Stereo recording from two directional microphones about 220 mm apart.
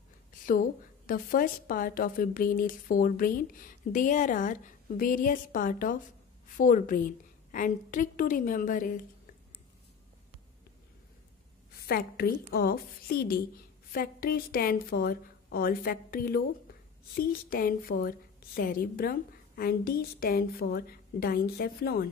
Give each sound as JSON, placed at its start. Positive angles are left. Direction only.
{"t": 0.3, "sound": "a woman's voice", "side_deg": 40}
{"t": 11.8, "sound": "a woman's voice", "side_deg": 45}